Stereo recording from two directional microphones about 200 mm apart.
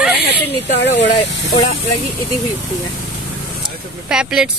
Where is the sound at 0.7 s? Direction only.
60° left (ahead or behind).